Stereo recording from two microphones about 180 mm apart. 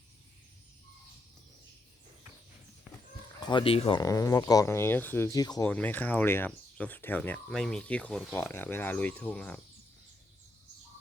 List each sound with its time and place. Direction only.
3.4 s speech: 30° left (ahead or behind)
4.0 s speech: 20° left (ahead or behind)
5.6 s speech: 10° left (ahead or behind)